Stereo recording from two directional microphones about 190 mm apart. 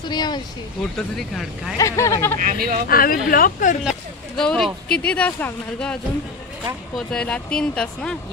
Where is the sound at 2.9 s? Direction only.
50° left (ahead or behind).